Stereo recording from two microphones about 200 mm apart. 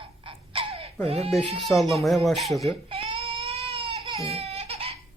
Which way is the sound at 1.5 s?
Centre (ahead or behind).